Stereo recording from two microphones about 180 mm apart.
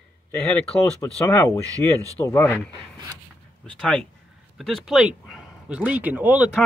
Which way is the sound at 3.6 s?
5° left (ahead or behind).